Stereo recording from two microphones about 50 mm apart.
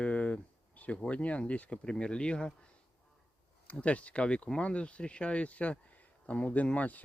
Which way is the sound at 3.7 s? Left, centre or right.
Left.